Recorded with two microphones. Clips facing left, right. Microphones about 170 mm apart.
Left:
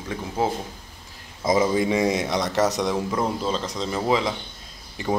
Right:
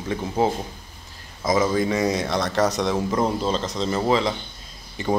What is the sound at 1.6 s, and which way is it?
Speech, 20° left (ahead or behind).